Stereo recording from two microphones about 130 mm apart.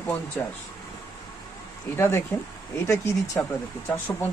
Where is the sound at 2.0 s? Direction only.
20° left (ahead or behind).